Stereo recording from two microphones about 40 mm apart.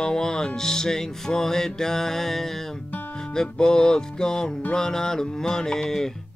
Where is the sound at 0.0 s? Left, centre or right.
Centre.